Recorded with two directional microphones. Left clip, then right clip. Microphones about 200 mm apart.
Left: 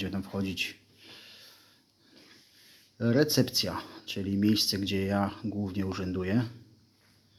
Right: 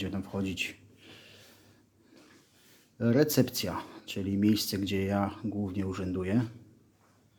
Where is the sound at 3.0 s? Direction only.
5° right (ahead or behind).